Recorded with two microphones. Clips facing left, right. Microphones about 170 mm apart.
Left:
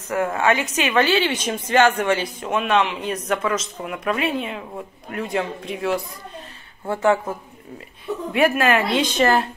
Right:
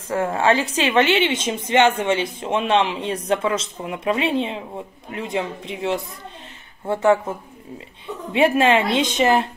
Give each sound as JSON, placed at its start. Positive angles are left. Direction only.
{"t": 0.1, "sound": "a woman's voice", "side_deg": -30}